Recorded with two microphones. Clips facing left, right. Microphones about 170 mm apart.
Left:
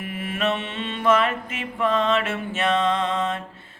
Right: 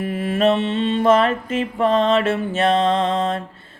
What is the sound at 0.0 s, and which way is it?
Mantra, 35° right (ahead or behind).